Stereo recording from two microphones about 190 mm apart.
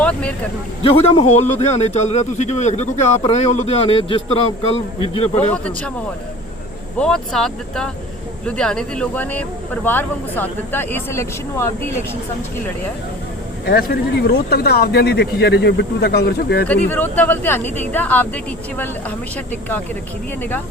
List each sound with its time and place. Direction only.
0.0 s speech: 5° left (ahead or behind)
0.8 s speech: 30° left (ahead or behind)
7.0 s speech: centre (ahead or behind)
13.7 s speech: 50° left (ahead or behind)
16.6 s speech: 10° left (ahead or behind)